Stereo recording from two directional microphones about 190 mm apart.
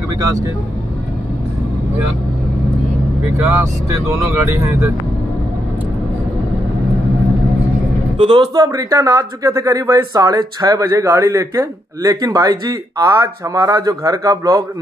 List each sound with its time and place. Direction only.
0.2 s speech: 15° right (ahead or behind)
3.3 s speech: 10° right (ahead or behind)
8.2 s speech: 25° right (ahead or behind)